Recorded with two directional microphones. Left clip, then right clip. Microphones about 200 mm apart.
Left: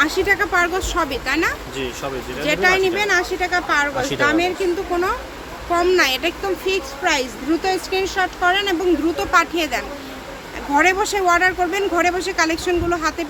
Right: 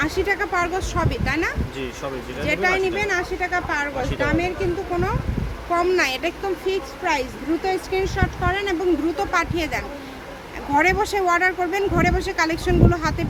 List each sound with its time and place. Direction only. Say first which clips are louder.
0.0 s speech: left 5 dB; 5° left (ahead or behind)
5.7 s speech: left 3 dB; 5° left (ahead or behind)